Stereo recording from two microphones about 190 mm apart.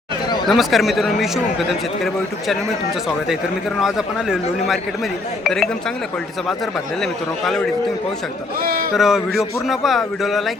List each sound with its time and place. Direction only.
0.4 s a man's voice: centre (ahead or behind)
3.8 s a man's voice: centre (ahead or behind)
7.0 s a man's voice: centre (ahead or behind)
8.6 s speech: 50° right (ahead or behind)
9.0 s a man's voice: centre (ahead or behind)